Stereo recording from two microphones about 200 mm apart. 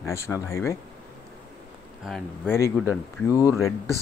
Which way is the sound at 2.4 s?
15° left (ahead or behind).